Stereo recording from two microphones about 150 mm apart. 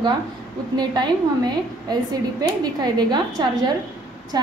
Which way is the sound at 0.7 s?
30° right (ahead or behind).